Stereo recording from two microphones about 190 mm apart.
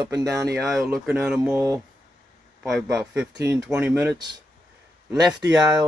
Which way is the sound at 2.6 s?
Centre (ahead or behind).